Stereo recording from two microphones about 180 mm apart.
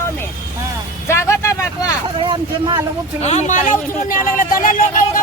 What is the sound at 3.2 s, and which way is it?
Speech, 40° left (ahead or behind).